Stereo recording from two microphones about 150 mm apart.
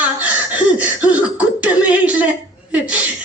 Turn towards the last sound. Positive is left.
turn(degrees=-10)  # may be behind; listen again after turning